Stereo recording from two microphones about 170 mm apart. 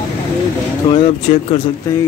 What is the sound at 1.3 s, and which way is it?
Speech, 40° left (ahead or behind).